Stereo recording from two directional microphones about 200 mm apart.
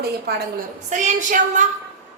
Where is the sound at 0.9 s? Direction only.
35° right (ahead or behind).